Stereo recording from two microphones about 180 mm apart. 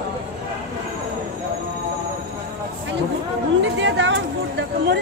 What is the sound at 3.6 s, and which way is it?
Chatter, 90° right.